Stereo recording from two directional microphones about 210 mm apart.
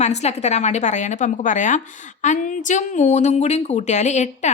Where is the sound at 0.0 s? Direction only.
30° left (ahead or behind).